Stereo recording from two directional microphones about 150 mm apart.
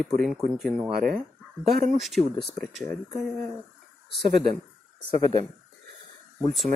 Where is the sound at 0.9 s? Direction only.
75° right (ahead or behind).